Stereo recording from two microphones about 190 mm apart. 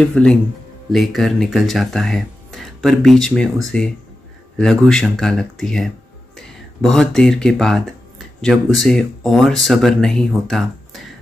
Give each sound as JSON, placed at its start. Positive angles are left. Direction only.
{"t": 0.0, "sound": "speech", "side_deg": 5}